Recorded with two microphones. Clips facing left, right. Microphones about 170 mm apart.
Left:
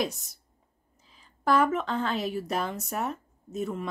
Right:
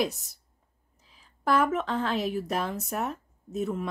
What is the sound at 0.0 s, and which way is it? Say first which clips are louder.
A woman's voice: right 2 dB; centre (ahead or behind).